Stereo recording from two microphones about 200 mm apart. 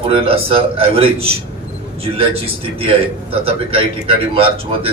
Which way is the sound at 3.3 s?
30° right (ahead or behind).